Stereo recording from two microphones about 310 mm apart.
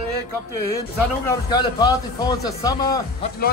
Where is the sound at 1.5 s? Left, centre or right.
Centre.